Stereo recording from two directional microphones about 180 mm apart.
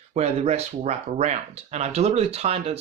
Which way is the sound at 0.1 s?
35° right (ahead or behind).